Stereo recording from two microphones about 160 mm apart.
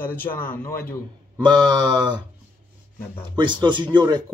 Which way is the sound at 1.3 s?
25° right (ahead or behind).